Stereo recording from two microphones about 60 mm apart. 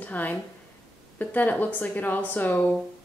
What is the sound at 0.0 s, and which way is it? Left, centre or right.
A woman's voice, left.